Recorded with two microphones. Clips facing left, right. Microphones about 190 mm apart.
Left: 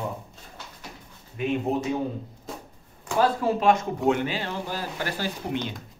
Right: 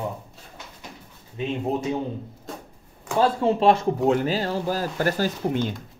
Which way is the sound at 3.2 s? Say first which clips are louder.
Right 3 dB; 25° right (ahead or behind).